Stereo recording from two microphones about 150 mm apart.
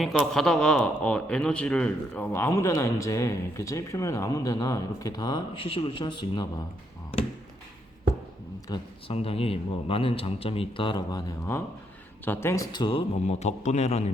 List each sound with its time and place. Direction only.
0.0 s a man's voice: centre (ahead or behind); by 6.5 s 30° left (ahead or behind)
8.7 s a man's voice: 40° left (ahead or behind); by 12.6 s 15° left (ahead or behind)
12.7 s speech: 35° left (ahead or behind); by 14.0 s 50° left (ahead or behind)